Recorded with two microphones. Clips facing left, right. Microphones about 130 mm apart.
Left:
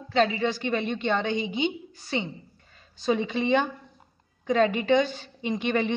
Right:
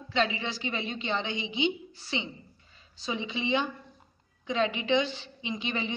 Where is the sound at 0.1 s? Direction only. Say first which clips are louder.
Left 6 dB; 45° left (ahead or behind).